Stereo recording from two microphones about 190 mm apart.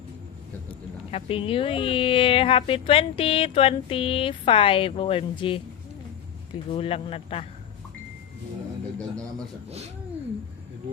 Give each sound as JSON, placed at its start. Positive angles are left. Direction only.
{"t": 1.1, "sound": "speech", "side_deg": 30}
{"t": 6.7, "sound": "speech", "side_deg": 30}
{"t": 9.6, "sound": "speech", "side_deg": -35}